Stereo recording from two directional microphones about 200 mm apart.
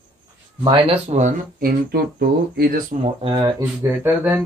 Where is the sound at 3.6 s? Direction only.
10° right (ahead or behind).